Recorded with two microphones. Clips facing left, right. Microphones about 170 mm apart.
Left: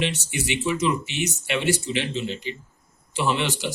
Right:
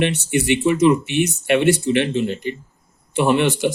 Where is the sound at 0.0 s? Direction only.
55° right (ahead or behind).